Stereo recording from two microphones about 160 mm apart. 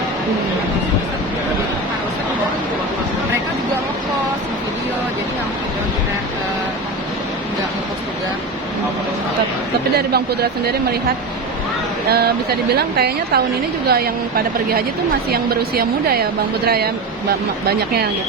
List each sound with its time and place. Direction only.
9.9 s speech: 80° right
12.0 s a woman's voice: 80° right